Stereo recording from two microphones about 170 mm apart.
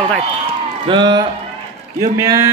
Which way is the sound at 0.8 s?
25° right (ahead or behind).